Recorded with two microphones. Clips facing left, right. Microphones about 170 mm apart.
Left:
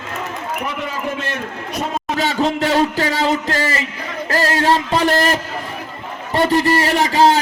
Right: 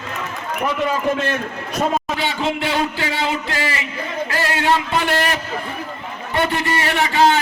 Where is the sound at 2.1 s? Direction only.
40° left (ahead or behind).